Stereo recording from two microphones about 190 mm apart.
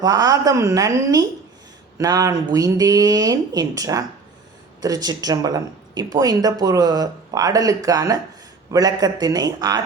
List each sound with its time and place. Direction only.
0.0 s speech: 20° right (ahead or behind)